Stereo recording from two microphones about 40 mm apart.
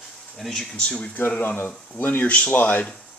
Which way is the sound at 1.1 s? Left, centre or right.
Left.